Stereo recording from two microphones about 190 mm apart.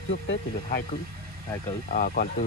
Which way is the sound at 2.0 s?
50° left (ahead or behind).